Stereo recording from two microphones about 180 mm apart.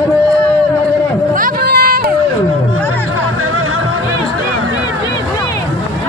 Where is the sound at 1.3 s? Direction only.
55° right (ahead or behind).